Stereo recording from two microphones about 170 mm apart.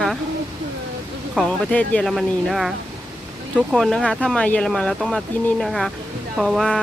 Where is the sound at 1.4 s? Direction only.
5° left (ahead or behind).